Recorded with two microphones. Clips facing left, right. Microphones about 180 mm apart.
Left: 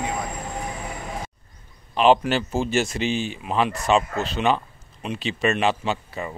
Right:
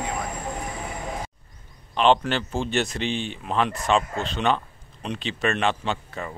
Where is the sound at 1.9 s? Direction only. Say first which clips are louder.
Left 2 dB; 10° left (ahead or behind).